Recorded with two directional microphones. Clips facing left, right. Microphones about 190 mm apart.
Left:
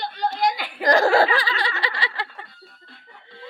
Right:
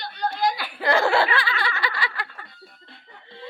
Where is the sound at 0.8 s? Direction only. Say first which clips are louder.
Left 3 dB; 40° left (ahead or behind).